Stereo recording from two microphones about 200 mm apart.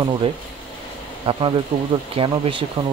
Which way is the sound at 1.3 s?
30° right (ahead or behind).